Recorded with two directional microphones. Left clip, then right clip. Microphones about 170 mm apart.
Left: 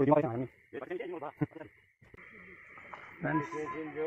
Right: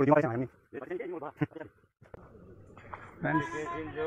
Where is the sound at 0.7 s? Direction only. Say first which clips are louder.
Even; 40° right (ahead or behind).